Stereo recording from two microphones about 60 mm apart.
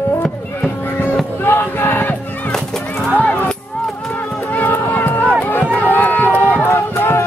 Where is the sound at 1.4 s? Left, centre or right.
Left.